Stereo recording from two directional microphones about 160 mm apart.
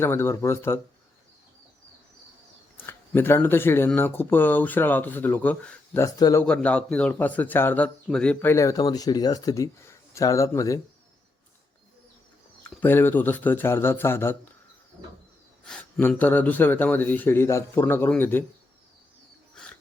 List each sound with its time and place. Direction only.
0.0 s speech: 15° left (ahead or behind)
2.7 s speech: 15° left (ahead or behind)
6.0 s speech: 20° left (ahead or behind)
6.4 s speech: 5° left (ahead or behind)
12.6 s speech: 10° left (ahead or behind)
15.6 s speech: 5° left (ahead or behind)